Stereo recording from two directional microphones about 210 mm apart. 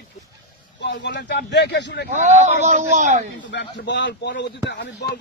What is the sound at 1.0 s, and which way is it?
A man's voice, 55° left (ahead or behind).